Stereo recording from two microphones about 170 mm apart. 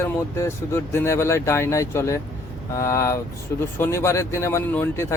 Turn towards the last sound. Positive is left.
turn(degrees=15)  # may be behind; listen again after turning